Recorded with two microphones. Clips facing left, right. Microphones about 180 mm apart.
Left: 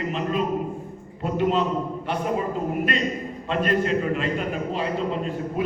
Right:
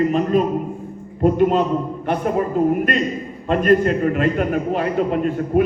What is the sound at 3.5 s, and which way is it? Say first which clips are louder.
A man's voice: right 7 dB; 50° right (ahead or behind).